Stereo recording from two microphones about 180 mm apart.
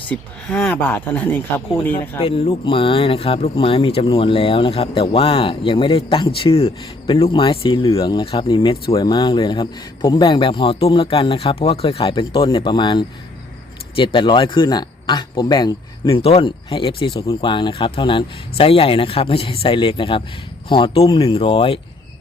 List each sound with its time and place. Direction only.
0.1 s speech: 10° left (ahead or behind)
2.2 s speech: 30° left (ahead or behind)